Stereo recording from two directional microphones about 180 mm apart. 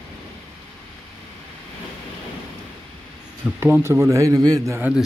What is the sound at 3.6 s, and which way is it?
Speech, 15° right (ahead or behind).